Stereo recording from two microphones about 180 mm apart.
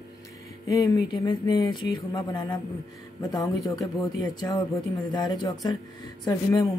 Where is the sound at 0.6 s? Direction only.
20° left (ahead or behind).